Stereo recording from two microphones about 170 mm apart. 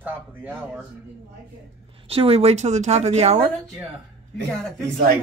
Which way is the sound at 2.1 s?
35° right (ahead or behind).